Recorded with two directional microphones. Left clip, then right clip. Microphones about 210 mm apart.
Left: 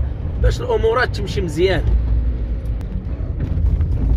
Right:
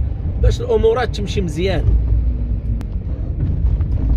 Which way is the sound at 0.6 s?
15° right (ahead or behind).